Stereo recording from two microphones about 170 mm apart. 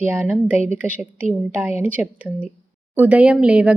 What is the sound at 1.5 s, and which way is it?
A woman's voice, 15° right (ahead or behind).